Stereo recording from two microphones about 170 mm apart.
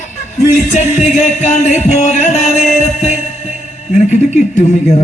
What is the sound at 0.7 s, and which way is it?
Music, 45° left (ahead or behind).